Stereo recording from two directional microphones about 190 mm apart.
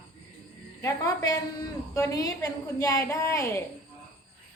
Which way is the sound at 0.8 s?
20° left (ahead or behind).